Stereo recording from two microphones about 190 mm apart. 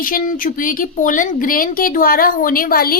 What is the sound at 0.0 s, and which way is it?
A woman's voice, 45° left (ahead or behind).